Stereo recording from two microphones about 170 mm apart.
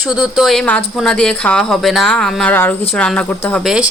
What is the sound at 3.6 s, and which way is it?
Speech, 5° right (ahead or behind).